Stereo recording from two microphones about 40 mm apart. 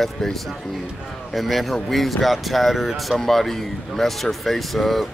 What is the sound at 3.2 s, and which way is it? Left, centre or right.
Speech, centre.